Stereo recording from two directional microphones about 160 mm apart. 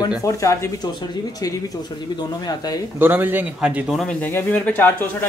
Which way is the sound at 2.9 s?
10° right (ahead or behind).